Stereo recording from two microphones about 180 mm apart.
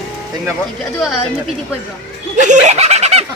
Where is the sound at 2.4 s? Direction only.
40° right (ahead or behind).